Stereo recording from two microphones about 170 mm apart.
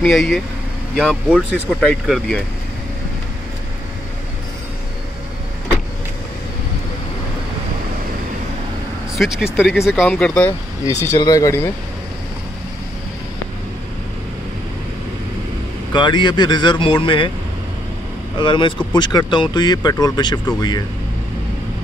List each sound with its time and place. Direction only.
0.0 s speech: centre (ahead or behind)
9.1 s speech: centre (ahead or behind)
10.0 s speech: 5° left (ahead or behind)
10.9 s speech: 20° left (ahead or behind)
15.9 s speech: 25° left (ahead or behind)
18.4 s speech: 30° left (ahead or behind)